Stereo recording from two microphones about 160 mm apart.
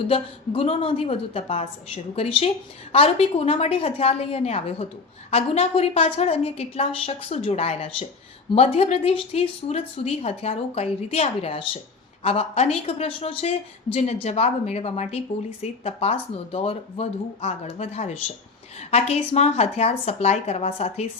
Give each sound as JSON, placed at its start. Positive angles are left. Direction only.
{"t": 0.1, "sound": "a woman's voice", "side_deg": 35}